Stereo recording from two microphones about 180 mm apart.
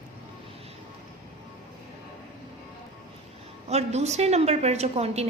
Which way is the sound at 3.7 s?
35° right (ahead or behind).